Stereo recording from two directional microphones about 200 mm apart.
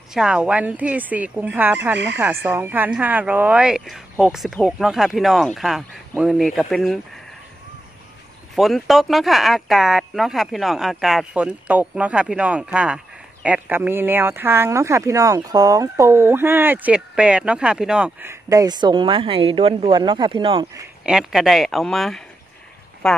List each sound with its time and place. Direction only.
0.1 s speech: 5° right (ahead or behind)
8.5 s speech: centre (ahead or behind); by 20.6 s 25° right (ahead or behind)
20.6 s a sound: 10° right (ahead or behind)
21.1 s speech: 5° right (ahead or behind)